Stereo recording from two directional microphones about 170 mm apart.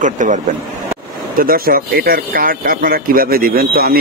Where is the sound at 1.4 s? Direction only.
60° right (ahead or behind).